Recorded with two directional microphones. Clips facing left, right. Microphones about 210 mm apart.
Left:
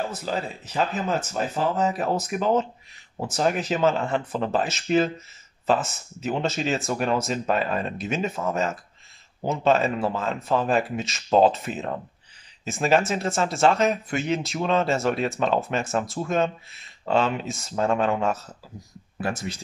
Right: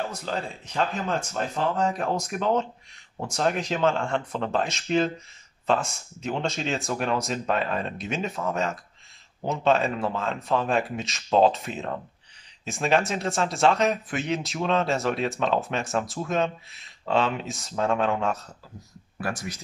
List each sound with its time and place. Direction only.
0.0 s speech: 5° left (ahead or behind)
19.2 s speech: 25° left (ahead or behind)